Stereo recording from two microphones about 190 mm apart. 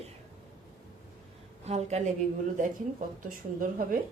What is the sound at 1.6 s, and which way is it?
Speech, 35° right (ahead or behind).